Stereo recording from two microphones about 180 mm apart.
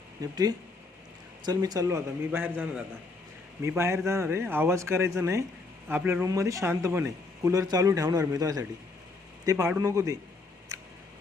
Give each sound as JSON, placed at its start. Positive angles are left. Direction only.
{"t": 0.2, "sound": "speech", "side_deg": -20}
{"t": 1.5, "sound": "a man's voice", "side_deg": -20}